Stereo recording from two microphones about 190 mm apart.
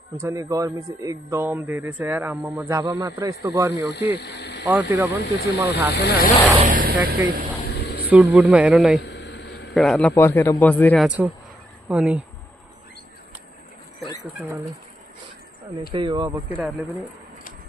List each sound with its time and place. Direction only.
0.2 s a man's voice: 15° right (ahead or behind)
4.2 s speech: 60° left (ahead or behind)
4.6 s a man's voice: 15° right (ahead or behind)
5.9 s speech: 55° left (ahead or behind)
6.6 s vehicle: 45° right (ahead or behind)
7.6 s a sound: 60° left (ahead or behind)
8.1 s speech: 5° right (ahead or behind)
9.0 s a sound: 65° left (ahead or behind)
9.8 s a man's voice: 5° left (ahead or behind)
11.1 s a man's voice: 10° right (ahead or behind)
14.4 s a man's voice: 15° right (ahead or behind)
15.9 s speech: 25° right (ahead or behind)
16.4 s speech: 5° right (ahead or behind)